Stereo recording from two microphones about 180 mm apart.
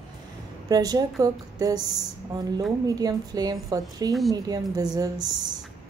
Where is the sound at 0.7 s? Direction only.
20° right (ahead or behind).